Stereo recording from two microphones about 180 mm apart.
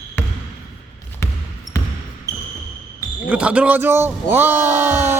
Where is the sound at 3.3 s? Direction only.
5° right (ahead or behind).